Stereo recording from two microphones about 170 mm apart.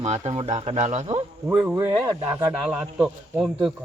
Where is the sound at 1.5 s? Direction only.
10° right (ahead or behind).